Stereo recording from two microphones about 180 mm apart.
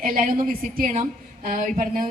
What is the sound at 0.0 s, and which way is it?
Speech, 50° right (ahead or behind).